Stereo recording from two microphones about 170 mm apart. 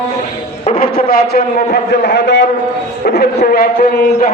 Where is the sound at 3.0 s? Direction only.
65° left (ahead or behind).